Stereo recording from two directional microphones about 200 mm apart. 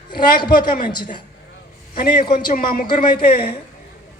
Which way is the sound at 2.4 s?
45° left (ahead or behind).